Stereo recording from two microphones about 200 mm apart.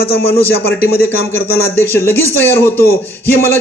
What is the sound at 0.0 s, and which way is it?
Speech, 50° left (ahead or behind).